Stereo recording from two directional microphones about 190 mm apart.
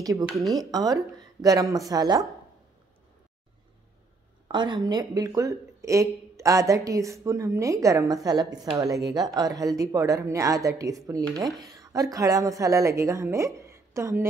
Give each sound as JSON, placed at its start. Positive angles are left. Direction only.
{"t": 0.0, "sound": "a woman's voice", "side_deg": -20}
{"t": 4.5, "sound": "speech", "side_deg": -25}